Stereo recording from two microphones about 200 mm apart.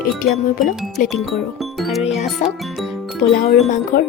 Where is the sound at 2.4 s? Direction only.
35° left (ahead or behind).